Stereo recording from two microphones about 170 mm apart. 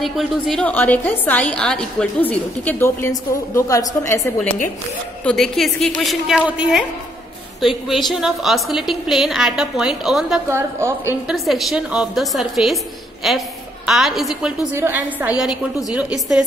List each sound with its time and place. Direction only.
0.0 s a woman's voice: centre (ahead or behind); by 4.6 s 15° left (ahead or behind)
5.2 s a woman's voice: 5° left (ahead or behind)
10.5 s a woman's voice: 15° right (ahead or behind)
11.2 s a woman's voice: centre (ahead or behind)
14.7 s a woman's voice: 15° right (ahead or behind)